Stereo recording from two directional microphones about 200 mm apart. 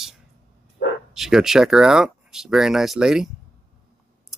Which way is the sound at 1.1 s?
Centre (ahead or behind).